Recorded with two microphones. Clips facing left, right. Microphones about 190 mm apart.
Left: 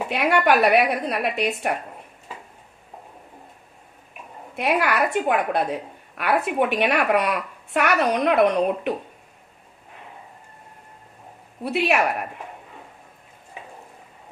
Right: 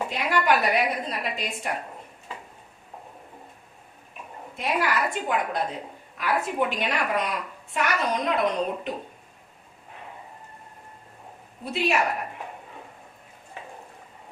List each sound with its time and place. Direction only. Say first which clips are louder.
0.1 s a woman's voice: left 6 dB; 65° left (ahead or behind)
4.5 s a woman's voice: left 4 dB; 65° left (ahead or behind)
11.6 s a woman's voice: left 4 dB; 65° left (ahead or behind)